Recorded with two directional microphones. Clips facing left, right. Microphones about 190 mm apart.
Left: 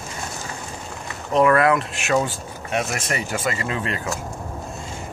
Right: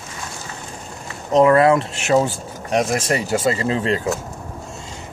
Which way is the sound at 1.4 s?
25° right (ahead or behind).